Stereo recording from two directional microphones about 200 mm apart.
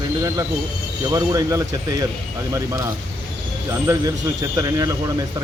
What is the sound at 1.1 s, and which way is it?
A man's voice, 15° right (ahead or behind).